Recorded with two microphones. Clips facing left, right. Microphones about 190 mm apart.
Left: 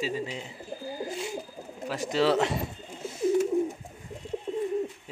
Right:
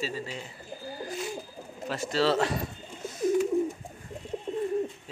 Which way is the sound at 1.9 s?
15° left (ahead or behind).